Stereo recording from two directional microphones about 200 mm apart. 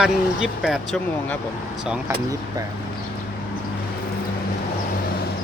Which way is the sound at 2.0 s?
15° right (ahead or behind).